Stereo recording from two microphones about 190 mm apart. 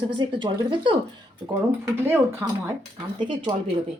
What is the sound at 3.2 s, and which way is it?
Speech, 25° right (ahead or behind).